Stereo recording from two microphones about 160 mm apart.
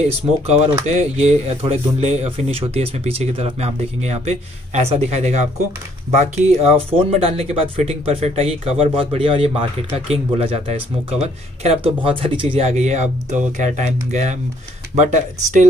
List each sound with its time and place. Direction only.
0.1 s speech: 40° right (ahead or behind)